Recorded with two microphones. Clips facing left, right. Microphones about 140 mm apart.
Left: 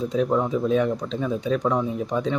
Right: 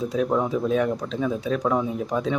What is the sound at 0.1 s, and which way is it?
Speech, 5° right (ahead or behind).